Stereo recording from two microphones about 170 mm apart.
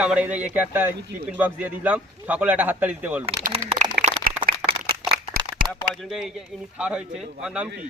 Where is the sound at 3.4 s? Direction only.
45° right (ahead or behind).